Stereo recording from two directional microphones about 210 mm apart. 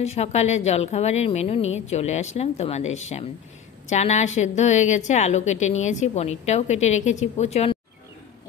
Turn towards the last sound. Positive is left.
turn(degrees=30)  # may be behind; listen again after turning